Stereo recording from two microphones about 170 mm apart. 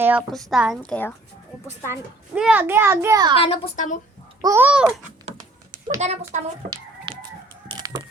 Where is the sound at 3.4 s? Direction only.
35° left (ahead or behind).